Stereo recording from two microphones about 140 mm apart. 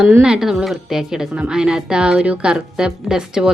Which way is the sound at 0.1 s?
5° right (ahead or behind).